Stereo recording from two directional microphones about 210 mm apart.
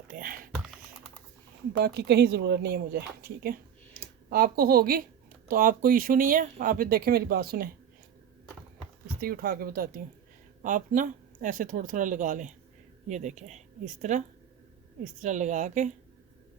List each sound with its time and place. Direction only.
0.1 s speech: 40° right (ahead or behind)
1.7 s speech: 50° right (ahead or behind)
9.2 s speech: 45° right (ahead or behind)